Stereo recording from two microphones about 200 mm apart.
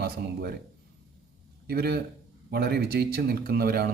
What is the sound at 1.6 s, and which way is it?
A man's voice, 50° right (ahead or behind).